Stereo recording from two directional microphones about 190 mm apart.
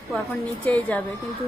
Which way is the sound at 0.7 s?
10° left (ahead or behind).